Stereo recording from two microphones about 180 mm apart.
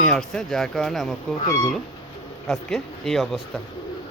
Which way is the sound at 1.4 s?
15° left (ahead or behind).